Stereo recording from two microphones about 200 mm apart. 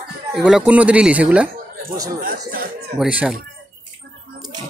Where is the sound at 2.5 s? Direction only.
50° right (ahead or behind).